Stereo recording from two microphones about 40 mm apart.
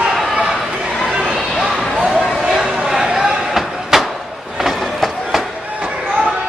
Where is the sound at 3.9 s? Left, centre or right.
Centre.